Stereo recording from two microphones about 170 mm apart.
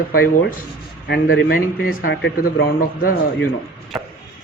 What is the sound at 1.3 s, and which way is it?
A man's voice, 75° left (ahead or behind).